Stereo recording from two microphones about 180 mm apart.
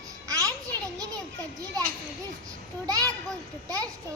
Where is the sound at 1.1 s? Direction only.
20° right (ahead or behind).